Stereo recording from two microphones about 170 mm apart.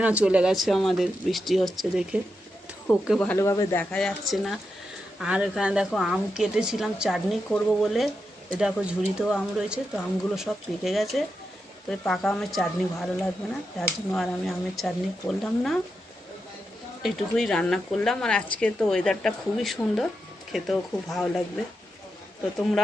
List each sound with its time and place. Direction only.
0.0 s a woman's voice: 5° right (ahead or behind)
3.2 s speech: 10° left (ahead or behind)
3.9 s a woman's voice: centre (ahead or behind)
17.0 s a woman's voice: centre (ahead or behind)